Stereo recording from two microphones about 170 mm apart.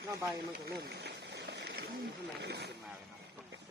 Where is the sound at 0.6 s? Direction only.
70° right (ahead or behind).